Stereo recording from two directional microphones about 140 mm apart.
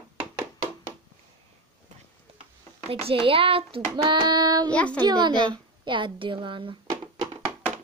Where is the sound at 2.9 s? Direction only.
45° right (ahead or behind).